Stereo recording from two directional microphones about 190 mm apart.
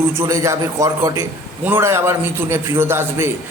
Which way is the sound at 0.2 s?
15° right (ahead or behind).